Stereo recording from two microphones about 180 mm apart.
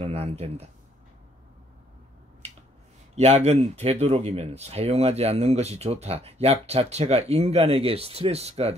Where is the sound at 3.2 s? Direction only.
35° right (ahead or behind).